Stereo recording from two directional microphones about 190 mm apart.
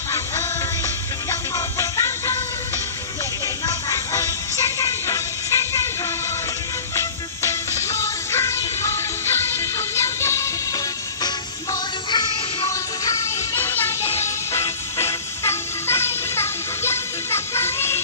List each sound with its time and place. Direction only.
0.1 s music: 15° left (ahead or behind)
3.6 s music: 15° left (ahead or behind)
7.0 s music: 15° left (ahead or behind)